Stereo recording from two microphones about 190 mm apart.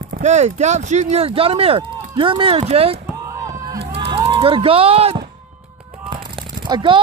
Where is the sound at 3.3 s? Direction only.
15° right (ahead or behind).